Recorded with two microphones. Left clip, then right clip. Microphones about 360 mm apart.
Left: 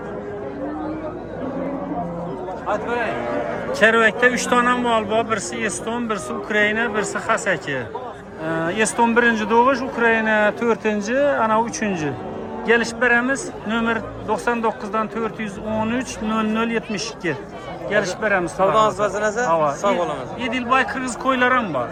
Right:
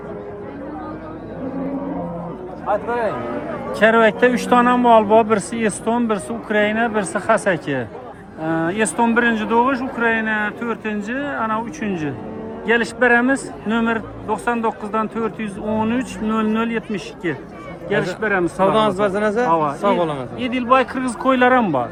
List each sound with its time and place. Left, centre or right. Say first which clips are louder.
3.8 s a man's voice: right 2 dB; centre
18.5 s a man's voice: even; right
19.5 s a man's voice: left 1 dB; centre
19.8 s a man's voice: right 2 dB; right
20.4 s a man's voice: right 3 dB; centre